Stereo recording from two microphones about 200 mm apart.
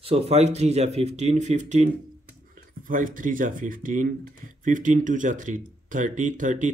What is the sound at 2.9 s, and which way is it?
Speech, 40° right (ahead or behind).